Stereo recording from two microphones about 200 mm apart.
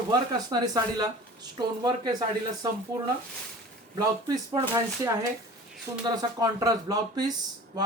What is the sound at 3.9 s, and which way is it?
A man's voice, 20° right (ahead or behind).